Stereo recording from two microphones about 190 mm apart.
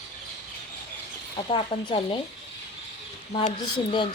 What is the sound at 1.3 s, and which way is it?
Speech, 25° left (ahead or behind).